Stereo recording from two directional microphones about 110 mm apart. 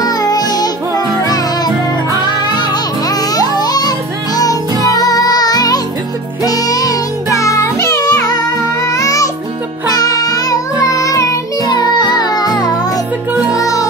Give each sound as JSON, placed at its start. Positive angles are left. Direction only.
{"t": 0.0, "sound": "music", "side_deg": 35}